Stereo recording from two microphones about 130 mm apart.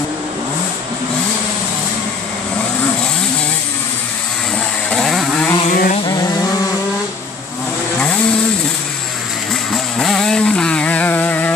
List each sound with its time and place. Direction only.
4.9 s chainsaw: centre (ahead or behind)
5.7 s vehicle: 90° left
9.9 s chainsaw: 5° left (ahead or behind)